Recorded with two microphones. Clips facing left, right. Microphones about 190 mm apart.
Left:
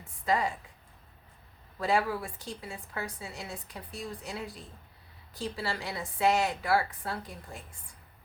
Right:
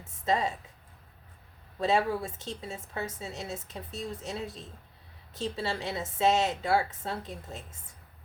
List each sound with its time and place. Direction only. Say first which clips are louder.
0.0 s a woman's voice: right 1 dB; 25° right (ahead or behind)
1.8 s a woman's voice: right 2 dB; 25° right (ahead or behind)